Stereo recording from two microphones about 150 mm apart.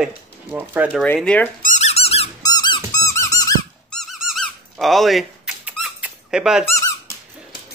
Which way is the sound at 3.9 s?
Centre (ahead or behind).